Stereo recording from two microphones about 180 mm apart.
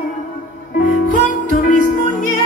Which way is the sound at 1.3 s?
50° left (ahead or behind).